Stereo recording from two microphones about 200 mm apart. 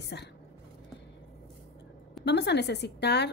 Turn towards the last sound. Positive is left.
turn(degrees=55)  # may be behind; listen again after turning